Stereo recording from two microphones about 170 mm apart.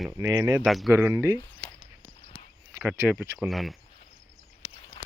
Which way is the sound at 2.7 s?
15° right (ahead or behind).